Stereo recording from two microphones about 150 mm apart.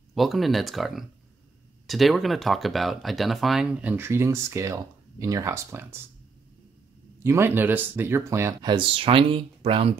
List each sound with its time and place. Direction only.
0.1 s speech: centre (ahead or behind); by 5.9 s 15° right (ahead or behind)
7.2 s speech: 15° right (ahead or behind)
8.6 s speech: 35° right (ahead or behind)